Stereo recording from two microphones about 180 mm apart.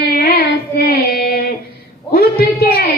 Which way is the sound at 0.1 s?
60° left (ahead or behind).